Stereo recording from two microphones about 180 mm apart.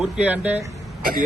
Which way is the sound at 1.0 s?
50° right (ahead or behind).